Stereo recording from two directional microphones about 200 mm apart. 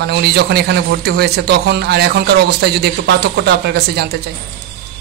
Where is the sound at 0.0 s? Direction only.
55° right (ahead or behind).